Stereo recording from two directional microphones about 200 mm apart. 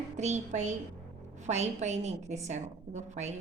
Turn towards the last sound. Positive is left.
turn(degrees=-35)  # may be behind; listen again after turning